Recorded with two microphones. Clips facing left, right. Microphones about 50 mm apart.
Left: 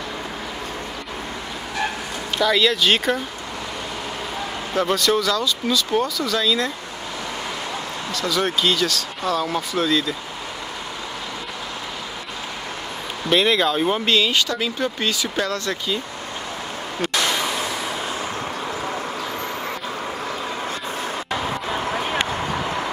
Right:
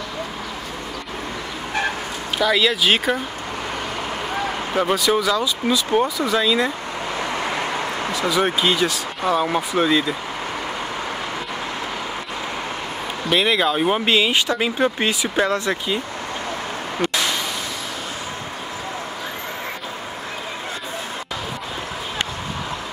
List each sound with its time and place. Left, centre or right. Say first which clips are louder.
2.3 s speech: even; centre
4.7 s speech: even; centre
8.1 s speech: right 2 dB; centre
13.3 s speech: even; centre